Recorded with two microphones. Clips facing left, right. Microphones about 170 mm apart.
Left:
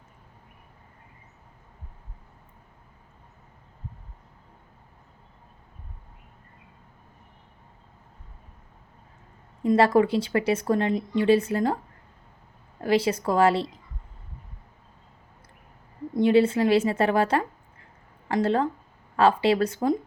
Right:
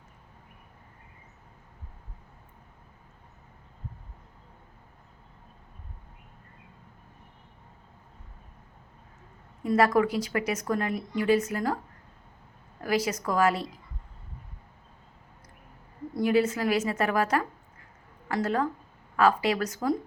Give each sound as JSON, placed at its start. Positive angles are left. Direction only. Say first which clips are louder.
{"t": 9.6, "sound": "speech", "louder": "left 3 dB", "side_deg": 30}
{"t": 12.8, "sound": "speech", "louder": "left 5 dB", "side_deg": 30}
{"t": 16.1, "sound": "speech", "louder": "left 5 dB", "side_deg": 25}